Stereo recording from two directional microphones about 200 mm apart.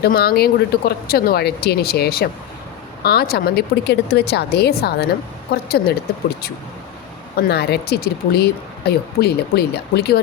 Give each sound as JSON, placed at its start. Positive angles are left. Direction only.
{"t": 0.0, "sound": "speech", "side_deg": 50}
{"t": 7.5, "sound": "speech", "side_deg": 55}